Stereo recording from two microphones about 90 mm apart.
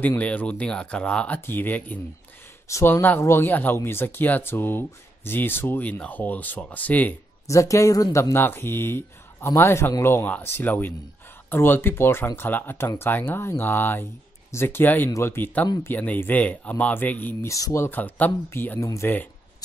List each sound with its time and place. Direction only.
0.0 s speech: 15° left (ahead or behind)
7.4 s speech: 35° left (ahead or behind)
17.5 s speech: 35° left (ahead or behind)
17.8 s speech: 20° left (ahead or behind)